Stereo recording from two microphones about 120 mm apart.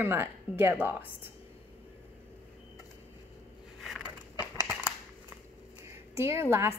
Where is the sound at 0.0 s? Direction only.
20° right (ahead or behind).